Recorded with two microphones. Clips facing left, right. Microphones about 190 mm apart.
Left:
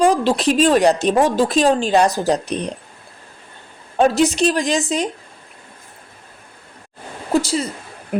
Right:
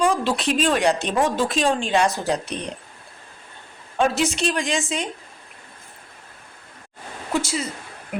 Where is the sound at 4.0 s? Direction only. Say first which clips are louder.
Left 6 dB; 40° left (ahead or behind).